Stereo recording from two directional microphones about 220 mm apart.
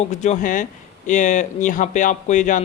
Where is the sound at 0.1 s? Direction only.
30° left (ahead or behind).